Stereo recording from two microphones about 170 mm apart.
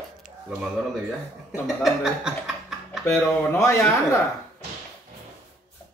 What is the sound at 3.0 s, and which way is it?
Speech, 15° left (ahead or behind).